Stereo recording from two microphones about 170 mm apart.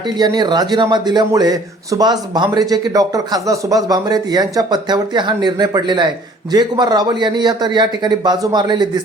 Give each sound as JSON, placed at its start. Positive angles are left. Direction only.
{"t": 0.2, "sound": "a man's voice", "side_deg": -25}